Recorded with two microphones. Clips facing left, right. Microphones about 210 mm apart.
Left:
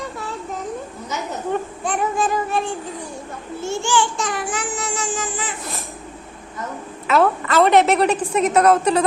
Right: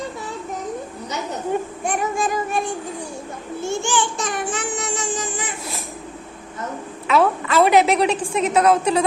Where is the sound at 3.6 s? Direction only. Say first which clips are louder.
Left 2 dB; 15° right (ahead or behind).